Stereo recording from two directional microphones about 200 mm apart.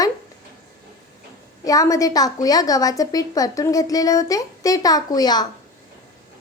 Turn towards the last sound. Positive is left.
turn(degrees=20)  # may be behind; listen again after turning